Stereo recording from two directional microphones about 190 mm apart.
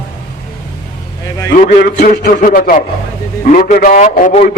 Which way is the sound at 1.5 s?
45° left (ahead or behind).